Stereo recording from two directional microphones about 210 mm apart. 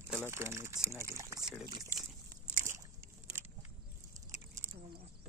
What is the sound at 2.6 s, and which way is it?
Boat, 15° right (ahead or behind).